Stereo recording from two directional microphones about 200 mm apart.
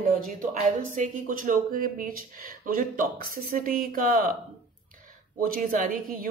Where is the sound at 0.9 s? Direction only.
45° right (ahead or behind).